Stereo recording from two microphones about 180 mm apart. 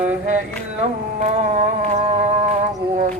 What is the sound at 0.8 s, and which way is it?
Carnatic music, 40° right (ahead or behind).